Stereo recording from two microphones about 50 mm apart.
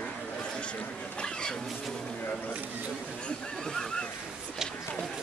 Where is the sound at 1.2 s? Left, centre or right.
Centre.